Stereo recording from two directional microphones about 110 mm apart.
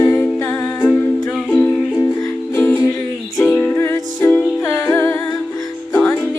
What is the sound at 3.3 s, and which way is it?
Music, 15° left (ahead or behind).